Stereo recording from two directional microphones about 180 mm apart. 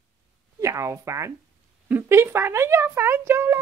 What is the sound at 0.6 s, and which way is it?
Speech, 15° right (ahead or behind).